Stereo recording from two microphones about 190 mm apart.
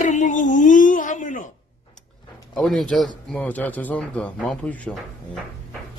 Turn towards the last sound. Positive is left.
turn(degrees=5)  # may be behind; listen again after turning